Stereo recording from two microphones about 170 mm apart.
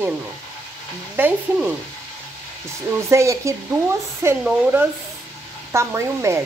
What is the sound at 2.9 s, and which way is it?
Speech, 15° right (ahead or behind).